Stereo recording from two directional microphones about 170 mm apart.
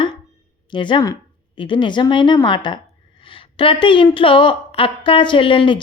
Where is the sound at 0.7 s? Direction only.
30° left (ahead or behind).